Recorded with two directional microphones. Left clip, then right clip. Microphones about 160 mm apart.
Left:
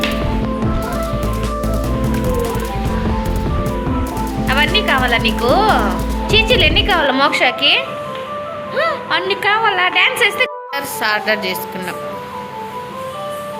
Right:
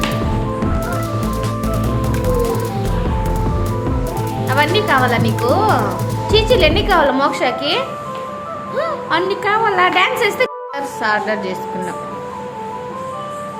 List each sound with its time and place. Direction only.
4.4 s a woman's voice: 20° right (ahead or behind)